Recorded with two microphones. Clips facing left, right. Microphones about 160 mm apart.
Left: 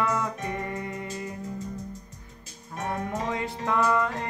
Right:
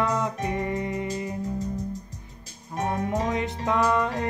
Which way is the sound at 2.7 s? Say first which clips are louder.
Right 4 dB; 20° right (ahead or behind).